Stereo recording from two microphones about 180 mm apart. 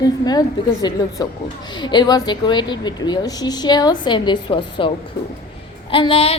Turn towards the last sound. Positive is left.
turn(degrees=30)  # may be behind; listen again after turning